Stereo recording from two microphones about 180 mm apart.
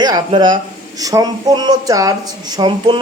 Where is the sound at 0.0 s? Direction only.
20° right (ahead or behind).